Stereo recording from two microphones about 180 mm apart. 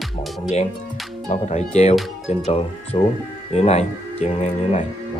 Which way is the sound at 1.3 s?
40° left (ahead or behind).